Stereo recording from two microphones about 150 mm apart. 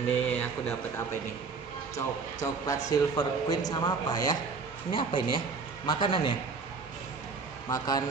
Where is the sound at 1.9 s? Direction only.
20° left (ahead or behind).